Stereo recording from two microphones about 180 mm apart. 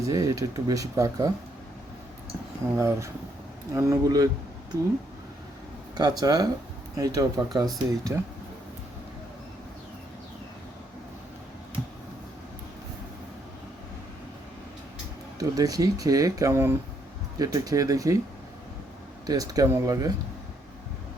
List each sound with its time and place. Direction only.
0.1 s speech: 20° right (ahead or behind)
2.7 s speech: 15° right (ahead or behind)
6.0 s speech: 20° right (ahead or behind)
15.4 s speech: 20° right (ahead or behind)
19.2 s speech: 20° right (ahead or behind)